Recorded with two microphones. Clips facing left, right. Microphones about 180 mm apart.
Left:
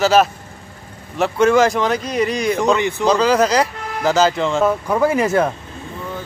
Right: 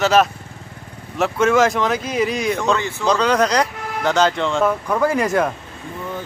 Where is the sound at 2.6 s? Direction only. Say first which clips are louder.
Left 4 dB; 15° left (ahead or behind).